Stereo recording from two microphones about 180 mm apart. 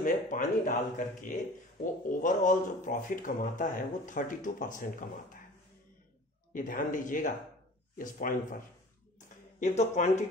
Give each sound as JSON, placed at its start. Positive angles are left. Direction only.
{"t": 0.0, "sound": "speech", "side_deg": 50}
{"t": 6.5, "sound": "speech", "side_deg": 45}